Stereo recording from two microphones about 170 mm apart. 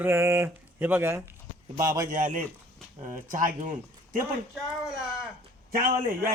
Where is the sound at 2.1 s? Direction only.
50° right (ahead or behind).